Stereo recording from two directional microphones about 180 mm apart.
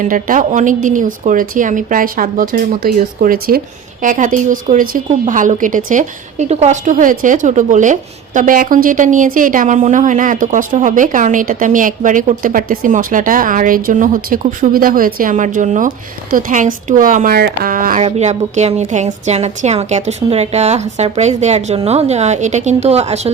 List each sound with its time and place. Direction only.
0.0 s a woman's voice: 50° right (ahead or behind)
18.0 s a woman's voice: 40° right (ahead or behind)